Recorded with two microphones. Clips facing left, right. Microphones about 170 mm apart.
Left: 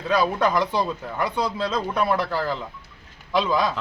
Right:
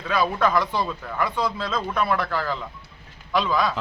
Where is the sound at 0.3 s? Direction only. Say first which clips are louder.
Left 1 dB; 15° left (ahead or behind).